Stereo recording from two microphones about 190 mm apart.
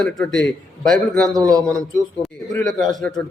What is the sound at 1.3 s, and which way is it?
Speech, 20° right (ahead or behind).